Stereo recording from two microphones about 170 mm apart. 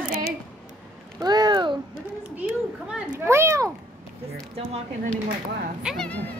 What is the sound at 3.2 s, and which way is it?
Speech, 15° right (ahead or behind).